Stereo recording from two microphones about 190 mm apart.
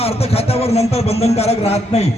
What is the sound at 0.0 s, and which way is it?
Speech, 30° left (ahead or behind).